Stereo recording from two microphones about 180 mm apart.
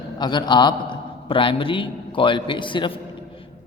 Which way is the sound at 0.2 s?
25° left (ahead or behind).